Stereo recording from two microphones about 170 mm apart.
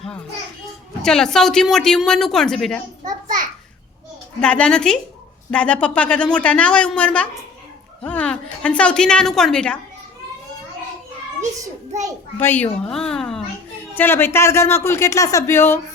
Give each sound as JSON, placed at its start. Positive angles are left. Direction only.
{"t": 1.0, "sound": "a woman's voice", "side_deg": 5}
{"t": 4.4, "sound": "a woman's voice", "side_deg": 5}
{"t": 12.4, "sound": "a woman's voice", "side_deg": 10}